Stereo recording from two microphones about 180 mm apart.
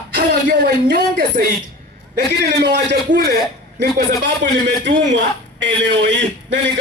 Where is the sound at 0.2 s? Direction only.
60° right (ahead or behind).